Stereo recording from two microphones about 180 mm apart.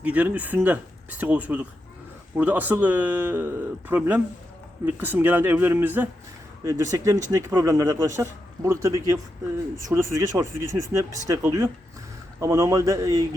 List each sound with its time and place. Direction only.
0.0 s speech: 5° right (ahead or behind)